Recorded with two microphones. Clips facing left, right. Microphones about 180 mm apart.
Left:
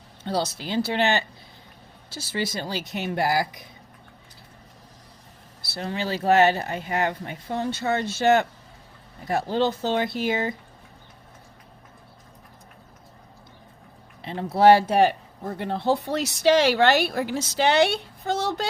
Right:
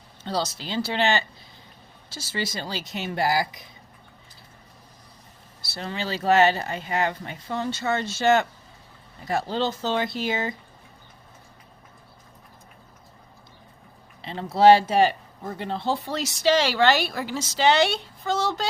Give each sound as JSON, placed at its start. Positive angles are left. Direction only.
{"t": 0.3, "sound": "speech", "side_deg": 55}
{"t": 5.6, "sound": "speech", "side_deg": 55}
{"t": 14.2, "sound": "speech", "side_deg": 55}